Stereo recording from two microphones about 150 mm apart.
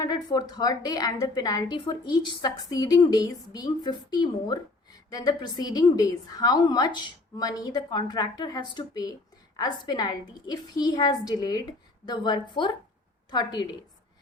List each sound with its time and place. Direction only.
0.0 s a woman's voice: 30° left (ahead or behind)